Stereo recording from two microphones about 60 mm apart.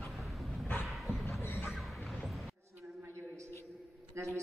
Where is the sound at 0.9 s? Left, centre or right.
Centre.